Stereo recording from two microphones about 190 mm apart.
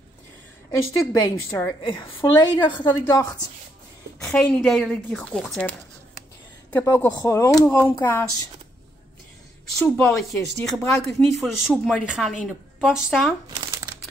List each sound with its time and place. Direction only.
0.7 s a woman's voice: 15° left (ahead or behind)
1.8 s a woman's voice: 25° left (ahead or behind)
4.4 s a woman's voice: centre (ahead or behind)
9.9 s speech: centre (ahead or behind)